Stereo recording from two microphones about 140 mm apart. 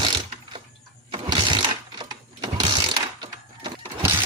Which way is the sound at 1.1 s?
35° right (ahead or behind).